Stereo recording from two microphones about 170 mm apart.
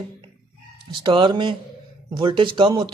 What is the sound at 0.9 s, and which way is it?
A man's voice, 30° right (ahead or behind).